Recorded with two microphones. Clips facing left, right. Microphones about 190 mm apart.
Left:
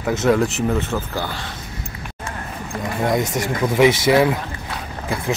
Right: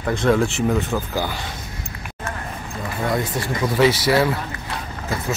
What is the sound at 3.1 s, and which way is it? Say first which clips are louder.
Speech: left 2 dB; 20° left (ahead or behind).